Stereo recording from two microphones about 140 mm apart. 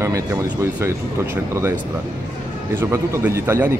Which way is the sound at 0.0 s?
20° right (ahead or behind).